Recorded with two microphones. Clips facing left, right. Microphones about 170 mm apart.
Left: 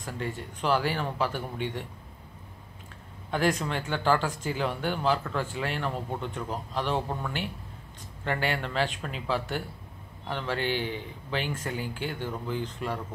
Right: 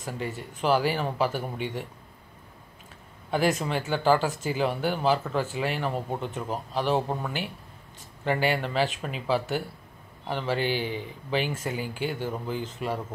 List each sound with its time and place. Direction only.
0.0 s speech: 5° right (ahead or behind)
3.3 s speech: 10° right (ahead or behind)
6.7 s speech: 10° right (ahead or behind)
7.0 s speech: 20° right (ahead or behind)